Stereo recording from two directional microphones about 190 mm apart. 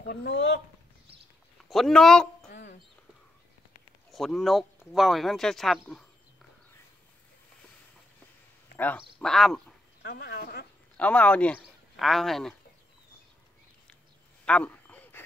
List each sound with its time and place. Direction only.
0.0 s speech: 55° left (ahead or behind)
1.7 s speech: centre (ahead or behind)
4.1 s speech: centre (ahead or behind)
8.7 s speech: 10° left (ahead or behind)
10.0 s speech: 55° left (ahead or behind)
11.0 s speech: 5° left (ahead or behind)
14.4 s a sound: 5° left (ahead or behind)